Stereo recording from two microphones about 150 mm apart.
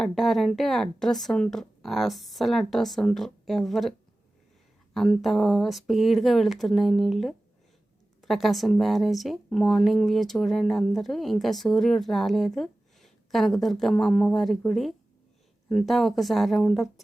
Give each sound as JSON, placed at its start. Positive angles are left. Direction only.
{"t": 0.0, "sound": "speech", "side_deg": 0}
{"t": 4.9, "sound": "speech", "side_deg": 0}